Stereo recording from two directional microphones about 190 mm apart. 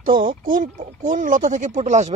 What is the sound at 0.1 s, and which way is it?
Speech, 25° right (ahead or behind).